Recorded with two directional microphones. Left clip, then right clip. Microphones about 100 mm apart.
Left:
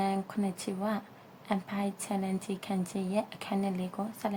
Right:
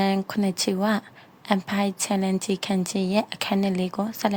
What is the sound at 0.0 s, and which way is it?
A woman's voice, 90° right.